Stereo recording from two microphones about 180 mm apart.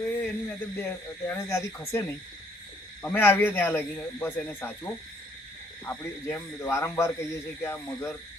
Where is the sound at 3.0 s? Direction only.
10° left (ahead or behind).